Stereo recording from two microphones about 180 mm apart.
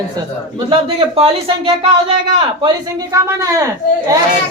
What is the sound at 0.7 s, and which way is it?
Speech, 30° right (ahead or behind).